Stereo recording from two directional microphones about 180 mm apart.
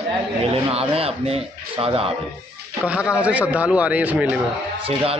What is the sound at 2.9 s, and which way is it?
A man's voice, 5° right (ahead or behind).